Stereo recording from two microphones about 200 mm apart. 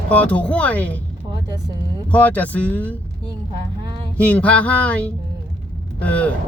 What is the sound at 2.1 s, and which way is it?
Speech, 5° left (ahead or behind).